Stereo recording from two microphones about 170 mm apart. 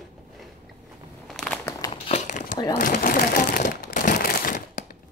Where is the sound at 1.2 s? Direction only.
5° left (ahead or behind).